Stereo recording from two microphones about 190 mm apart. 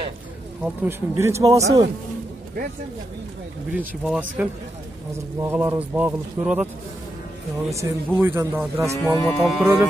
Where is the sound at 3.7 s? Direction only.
5° right (ahead or behind).